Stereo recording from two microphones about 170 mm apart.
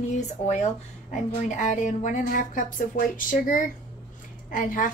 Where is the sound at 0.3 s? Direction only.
40° left (ahead or behind).